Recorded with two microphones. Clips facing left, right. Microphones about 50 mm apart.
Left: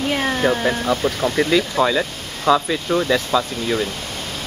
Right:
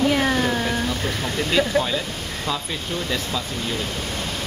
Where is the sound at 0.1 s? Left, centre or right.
Centre.